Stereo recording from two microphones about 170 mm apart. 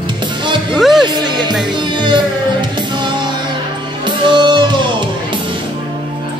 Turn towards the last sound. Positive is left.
turn(degrees=-25)  # may be behind; listen again after turning